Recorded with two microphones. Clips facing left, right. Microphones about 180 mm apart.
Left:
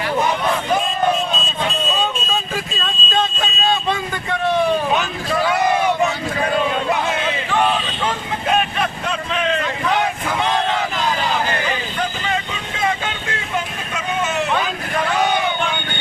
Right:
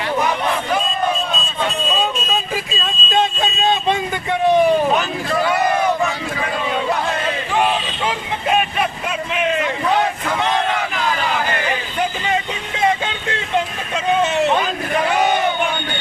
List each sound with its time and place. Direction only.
2.8 s vehicle: 15° right (ahead or behind)
4.9 s vehicle: centre (ahead or behind)
6.7 s a sound: centre (ahead or behind)
7.5 s vehicle: 15° right (ahead or behind)
8.0 s vehicle: 5° right (ahead or behind)
13.9 s a sound: 30° right (ahead or behind)